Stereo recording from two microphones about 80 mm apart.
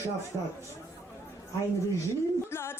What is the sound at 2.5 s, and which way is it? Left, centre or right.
A capella, left.